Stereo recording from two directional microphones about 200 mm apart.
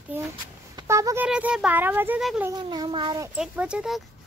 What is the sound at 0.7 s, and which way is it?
Speech, 15° right (ahead or behind).